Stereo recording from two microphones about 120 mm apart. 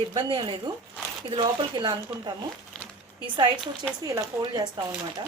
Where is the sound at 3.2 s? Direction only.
40° right (ahead or behind).